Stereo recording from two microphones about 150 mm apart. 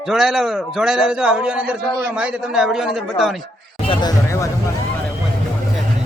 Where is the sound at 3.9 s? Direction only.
30° left (ahead or behind).